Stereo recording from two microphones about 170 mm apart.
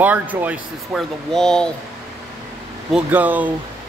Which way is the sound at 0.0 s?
10° right (ahead or behind).